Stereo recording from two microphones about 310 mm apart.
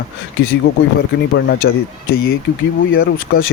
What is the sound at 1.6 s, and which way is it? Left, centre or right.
Speech, left.